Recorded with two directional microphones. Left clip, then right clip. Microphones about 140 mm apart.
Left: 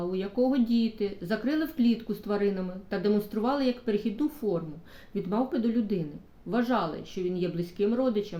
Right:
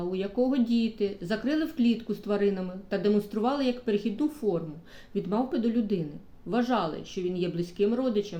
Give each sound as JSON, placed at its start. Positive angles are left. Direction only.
{"t": 0.1, "sound": "speech", "side_deg": -5}